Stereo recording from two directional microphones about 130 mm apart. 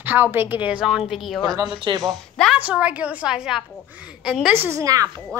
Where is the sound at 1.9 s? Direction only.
35° right (ahead or behind).